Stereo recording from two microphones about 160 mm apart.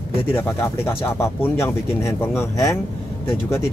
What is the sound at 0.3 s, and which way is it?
Speech, 15° left (ahead or behind).